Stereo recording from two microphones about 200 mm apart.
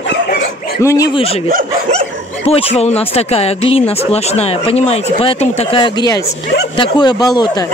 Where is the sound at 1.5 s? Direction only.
45° right (ahead or behind).